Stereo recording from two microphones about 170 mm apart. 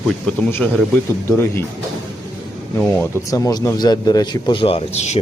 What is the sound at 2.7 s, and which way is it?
Speech, 10° left (ahead or behind).